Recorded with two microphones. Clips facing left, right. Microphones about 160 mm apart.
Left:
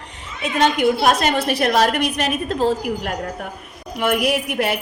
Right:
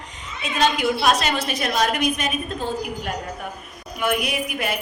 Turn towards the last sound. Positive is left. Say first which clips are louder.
# left 6 dB
turn(degrees=70)  # may be behind; listen again after turning